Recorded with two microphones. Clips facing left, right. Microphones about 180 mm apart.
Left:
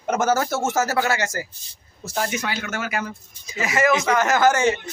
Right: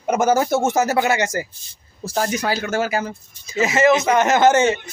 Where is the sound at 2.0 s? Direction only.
35° right (ahead or behind).